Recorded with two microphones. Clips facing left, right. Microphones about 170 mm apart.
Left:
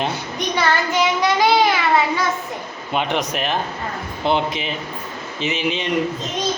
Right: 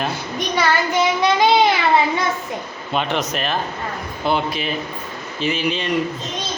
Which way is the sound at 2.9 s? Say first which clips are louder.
Even; 15° left (ahead or behind).